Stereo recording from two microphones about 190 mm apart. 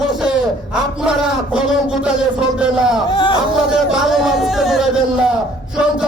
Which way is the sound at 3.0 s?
25° left (ahead or behind).